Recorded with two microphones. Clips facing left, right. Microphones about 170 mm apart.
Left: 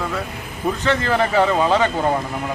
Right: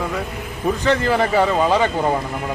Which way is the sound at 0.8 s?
15° right (ahead or behind).